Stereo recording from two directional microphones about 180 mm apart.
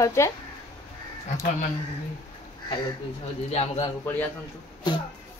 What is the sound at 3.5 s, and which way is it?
Speech, 35° left (ahead or behind).